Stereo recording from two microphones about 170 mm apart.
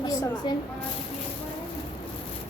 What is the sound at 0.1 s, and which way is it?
Speech, 20° left (ahead or behind).